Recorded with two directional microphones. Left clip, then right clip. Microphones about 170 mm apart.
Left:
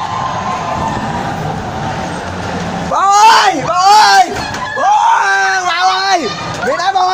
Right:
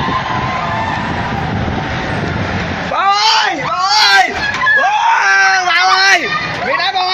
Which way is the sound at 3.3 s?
65° left (ahead or behind).